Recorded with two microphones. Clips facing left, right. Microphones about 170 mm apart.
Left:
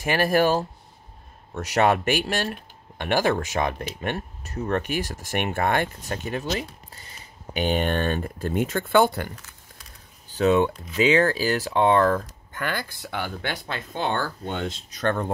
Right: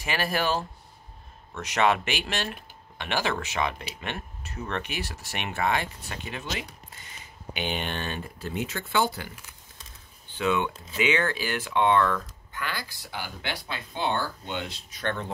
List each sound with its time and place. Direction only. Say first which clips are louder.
0.0 s speech: left 7 dB; 45° left (ahead or behind)
9.3 s crumpling: left 4 dB; 15° right (ahead or behind)
10.2 s speech: left 7 dB; 40° left (ahead or behind)
12.6 s speech: left 6 dB; 50° left (ahead or behind)